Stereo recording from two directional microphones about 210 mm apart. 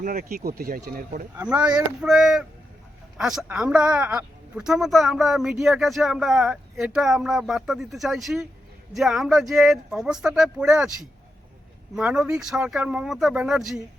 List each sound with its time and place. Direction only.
0.0 s speech: 40° right (ahead or behind)
1.5 s speech: 5° right (ahead or behind)
11.9 s speech: 5° right (ahead or behind)